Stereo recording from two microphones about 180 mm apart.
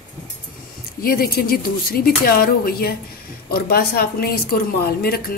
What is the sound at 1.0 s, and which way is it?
Speech, 55° left (ahead or behind).